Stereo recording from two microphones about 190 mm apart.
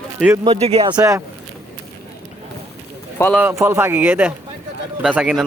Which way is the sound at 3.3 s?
10° right (ahead or behind).